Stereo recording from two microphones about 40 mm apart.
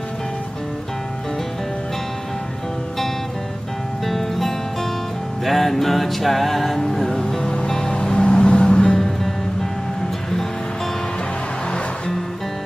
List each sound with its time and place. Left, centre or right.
4.0 s music: centre; by 8.9 s left
8.9 s music: centre